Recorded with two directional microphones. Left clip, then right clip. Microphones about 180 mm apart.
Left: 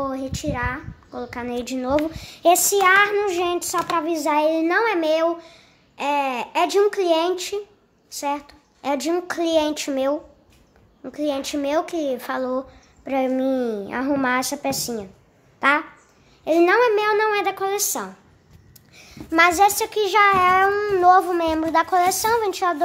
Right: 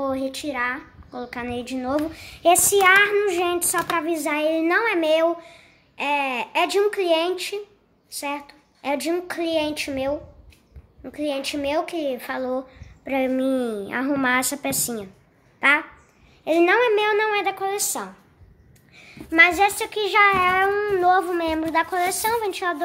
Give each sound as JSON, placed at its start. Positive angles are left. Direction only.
{"t": 0.0, "sound": "a woman's voice", "side_deg": 5}
{"t": 16.4, "sound": "a woman's voice", "side_deg": 5}
{"t": 18.9, "sound": "a sound", "side_deg": 15}
{"t": 19.8, "sound": "a woman's voice", "side_deg": 10}